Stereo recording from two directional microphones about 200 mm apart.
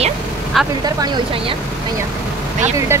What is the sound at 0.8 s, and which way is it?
Speech, 20° right (ahead or behind).